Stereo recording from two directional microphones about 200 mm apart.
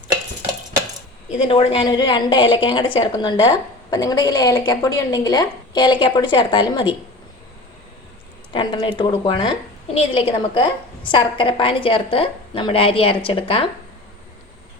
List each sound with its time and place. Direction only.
1.3 s a woman's voice: 30° left (ahead or behind)
8.5 s a woman's voice: 25° left (ahead or behind)